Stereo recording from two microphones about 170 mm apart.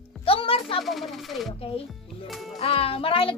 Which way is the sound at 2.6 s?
35° left (ahead or behind).